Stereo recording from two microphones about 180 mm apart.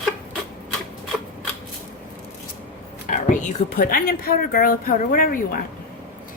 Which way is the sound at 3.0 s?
45° left (ahead or behind).